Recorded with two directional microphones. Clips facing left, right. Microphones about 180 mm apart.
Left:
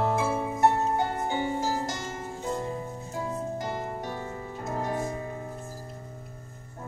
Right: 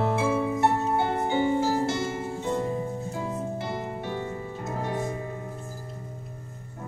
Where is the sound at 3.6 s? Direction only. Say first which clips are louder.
Right 1 dB; 40° left (ahead or behind).